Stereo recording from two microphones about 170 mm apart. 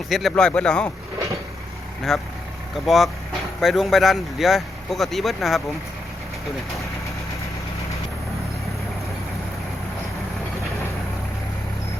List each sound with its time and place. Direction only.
0.1 s speech: centre (ahead or behind)
2.1 s speech: centre (ahead or behind)